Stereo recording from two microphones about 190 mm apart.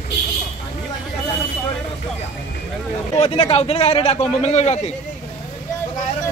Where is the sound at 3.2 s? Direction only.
30° left (ahead or behind).